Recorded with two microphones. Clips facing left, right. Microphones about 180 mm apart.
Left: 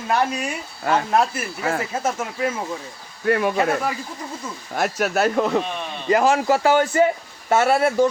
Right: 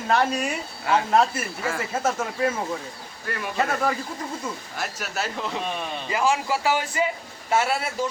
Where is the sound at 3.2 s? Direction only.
60° left (ahead or behind).